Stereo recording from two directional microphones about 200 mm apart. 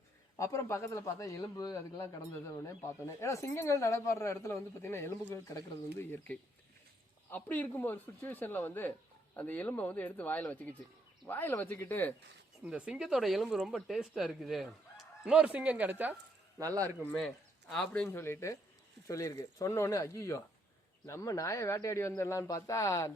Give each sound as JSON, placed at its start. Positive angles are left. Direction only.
{"t": 0.3, "sound": "speech", "side_deg": 15}
{"t": 12.6, "sound": "speech", "side_deg": -5}
{"t": 17.1, "sound": "speech", "side_deg": 0}